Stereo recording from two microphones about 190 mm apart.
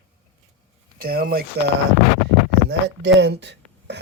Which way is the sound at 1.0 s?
50° right (ahead or behind).